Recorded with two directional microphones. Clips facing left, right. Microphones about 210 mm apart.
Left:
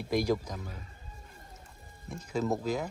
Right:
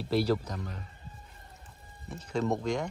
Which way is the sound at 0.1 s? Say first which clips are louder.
Right 1 dB; 10° left (ahead or behind).